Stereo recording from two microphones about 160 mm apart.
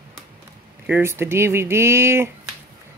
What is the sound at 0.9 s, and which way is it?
Speech, 15° right (ahead or behind).